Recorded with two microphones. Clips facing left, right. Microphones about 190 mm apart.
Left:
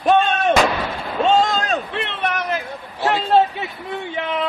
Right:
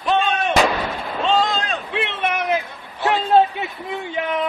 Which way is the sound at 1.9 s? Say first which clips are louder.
Right 1 dB; 5° right (ahead or behind).